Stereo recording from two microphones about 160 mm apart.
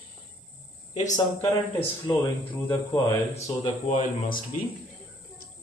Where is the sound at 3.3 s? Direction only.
40° left (ahead or behind).